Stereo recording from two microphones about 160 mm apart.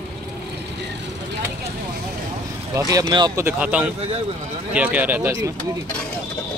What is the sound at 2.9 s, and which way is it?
Speech, 25° right (ahead or behind).